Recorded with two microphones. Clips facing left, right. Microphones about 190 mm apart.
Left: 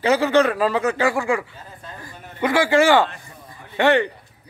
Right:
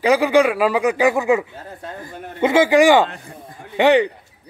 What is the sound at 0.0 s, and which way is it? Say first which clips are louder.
Speech: right 2 dB; 10° right (ahead or behind).